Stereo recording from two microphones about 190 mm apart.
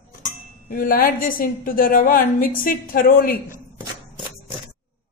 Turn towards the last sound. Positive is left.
turn(degrees=50)  # may be behind; listen again after turning